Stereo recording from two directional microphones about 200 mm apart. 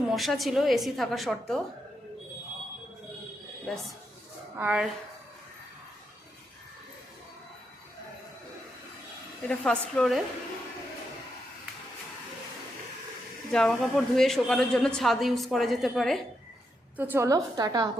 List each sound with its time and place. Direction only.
0.1 s speech: centre (ahead or behind)
4.5 s a woman's voice: 5° right (ahead or behind)
9.5 s speech: 5° left (ahead or behind)
13.5 s speech: 5° left (ahead or behind)
17.0 s a woman's voice: 10° right (ahead or behind)